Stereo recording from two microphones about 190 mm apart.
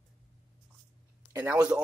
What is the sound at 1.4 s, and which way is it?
Speech, 5° right (ahead or behind).